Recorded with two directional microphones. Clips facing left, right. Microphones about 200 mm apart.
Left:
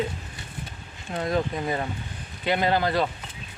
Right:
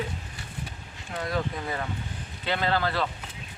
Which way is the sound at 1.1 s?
20° left (ahead or behind).